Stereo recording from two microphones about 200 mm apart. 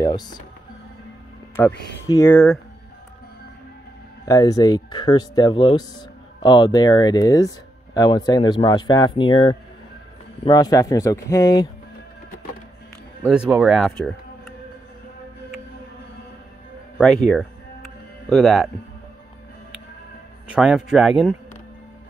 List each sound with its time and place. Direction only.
0.0 s speech: 20° left (ahead or behind)
1.6 s speech: 10° left (ahead or behind)
4.3 s speech: 20° left (ahead or behind)
13.3 s speech: 5° right (ahead or behind)
17.0 s a man's voice: 5° left (ahead or behind)
20.4 s a man's voice: 5° right (ahead or behind)